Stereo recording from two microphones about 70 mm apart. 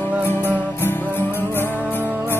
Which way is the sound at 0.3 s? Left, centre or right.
Left.